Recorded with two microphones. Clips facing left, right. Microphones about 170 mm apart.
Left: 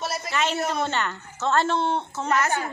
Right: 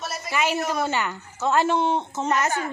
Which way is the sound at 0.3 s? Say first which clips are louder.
Right 2 dB; 10° right (ahead or behind).